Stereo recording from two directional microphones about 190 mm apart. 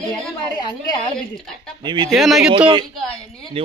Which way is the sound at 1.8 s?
25° right (ahead or behind).